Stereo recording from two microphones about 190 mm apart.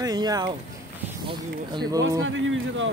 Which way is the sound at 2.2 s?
90° right.